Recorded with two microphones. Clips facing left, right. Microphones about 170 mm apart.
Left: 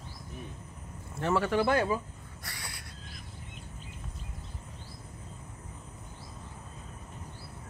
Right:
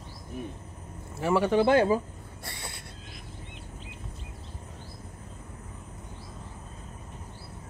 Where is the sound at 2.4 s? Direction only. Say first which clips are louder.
Right 3 dB; 25° right (ahead or behind).